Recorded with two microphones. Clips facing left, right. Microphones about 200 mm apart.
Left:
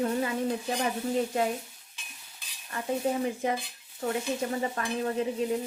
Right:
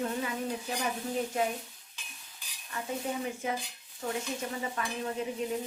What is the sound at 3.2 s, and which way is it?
A woman's voice, 35° left (ahead or behind).